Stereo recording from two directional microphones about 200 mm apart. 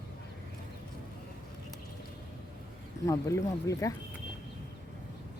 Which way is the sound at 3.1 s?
15° left (ahead or behind).